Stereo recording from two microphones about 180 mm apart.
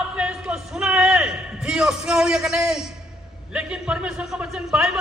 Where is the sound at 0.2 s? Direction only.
5° right (ahead or behind).